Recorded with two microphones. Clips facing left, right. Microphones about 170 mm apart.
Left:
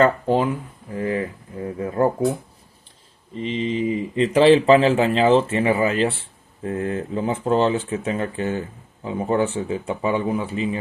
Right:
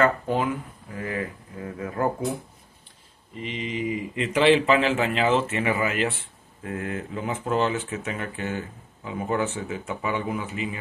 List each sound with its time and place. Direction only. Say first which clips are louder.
0.0 s speech: left 5 dB; 30° left (ahead or behind)
3.3 s speech: left 7 dB; 30° left (ahead or behind)